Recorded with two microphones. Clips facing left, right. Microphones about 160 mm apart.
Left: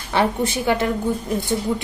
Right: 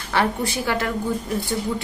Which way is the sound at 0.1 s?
20° left (ahead or behind).